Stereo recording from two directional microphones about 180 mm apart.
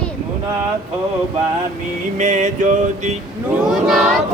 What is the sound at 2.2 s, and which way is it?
Music, 40° right (ahead or behind).